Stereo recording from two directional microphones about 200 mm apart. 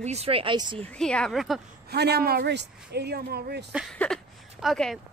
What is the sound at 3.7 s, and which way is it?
Speech, 5° left (ahead or behind).